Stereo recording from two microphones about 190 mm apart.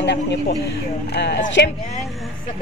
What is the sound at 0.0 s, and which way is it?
Speech, 65° left (ahead or behind).